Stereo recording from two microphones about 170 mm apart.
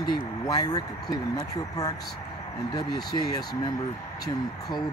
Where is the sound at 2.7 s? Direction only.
20° left (ahead or behind).